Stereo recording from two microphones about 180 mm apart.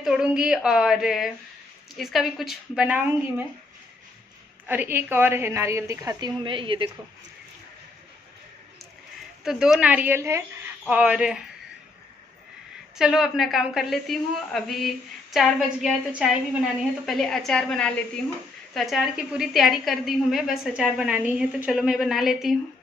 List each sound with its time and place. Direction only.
0.0 s a woman's voice: 5° right (ahead or behind)
4.6 s a woman's voice: 10° right (ahead or behind); by 6.9 s 30° right (ahead or behind)
9.4 s a woman's voice: centre (ahead or behind)
12.9 s a woman's voice: 5° right (ahead or behind)